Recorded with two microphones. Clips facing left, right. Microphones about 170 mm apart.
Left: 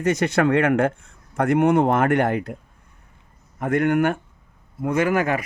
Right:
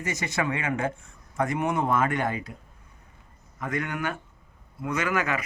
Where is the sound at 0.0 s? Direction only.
60° left (ahead or behind).